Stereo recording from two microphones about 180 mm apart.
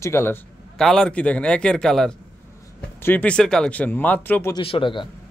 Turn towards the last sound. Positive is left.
turn(degrees=25)  # may be behind; listen again after turning